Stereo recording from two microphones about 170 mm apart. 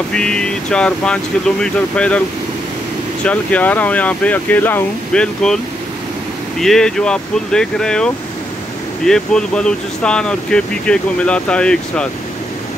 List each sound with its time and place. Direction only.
0.1 s speech: 5° left (ahead or behind)
3.3 s speech: 10° left (ahead or behind)
6.6 s speech: 5° left (ahead or behind)